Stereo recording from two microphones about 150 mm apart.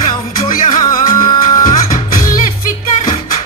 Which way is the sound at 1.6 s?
60° left (ahead or behind).